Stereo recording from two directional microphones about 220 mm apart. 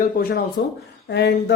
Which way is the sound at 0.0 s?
40° left (ahead or behind).